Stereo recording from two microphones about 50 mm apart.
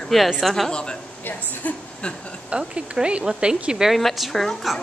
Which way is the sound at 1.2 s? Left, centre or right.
Left.